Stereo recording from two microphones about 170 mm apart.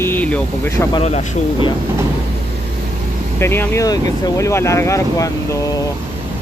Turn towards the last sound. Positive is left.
turn(degrees=20)  # may be behind; listen again after turning